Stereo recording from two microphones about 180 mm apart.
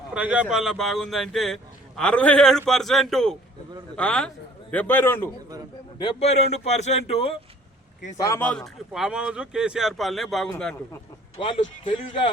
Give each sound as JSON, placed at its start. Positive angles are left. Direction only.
{"t": 0.1, "sound": "a man's voice", "side_deg": -5}
{"t": 6.0, "sound": "speech", "side_deg": 30}
{"t": 8.1, "sound": "a man's voice", "side_deg": 15}
{"t": 8.4, "sound": "speech", "side_deg": 5}
{"t": 11.3, "sound": "a man's voice", "side_deg": 30}